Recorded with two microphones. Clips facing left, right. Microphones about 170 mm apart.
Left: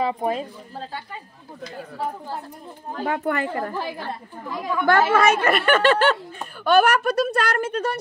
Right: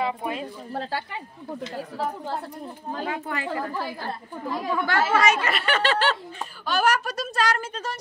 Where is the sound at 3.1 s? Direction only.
55° left (ahead or behind).